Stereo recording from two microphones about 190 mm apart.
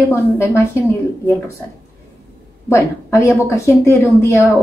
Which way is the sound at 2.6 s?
15° left (ahead or behind).